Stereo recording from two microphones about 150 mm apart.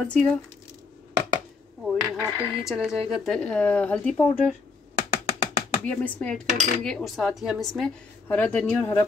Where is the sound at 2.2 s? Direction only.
5° right (ahead or behind); by 4.4 s 10° left (ahead or behind).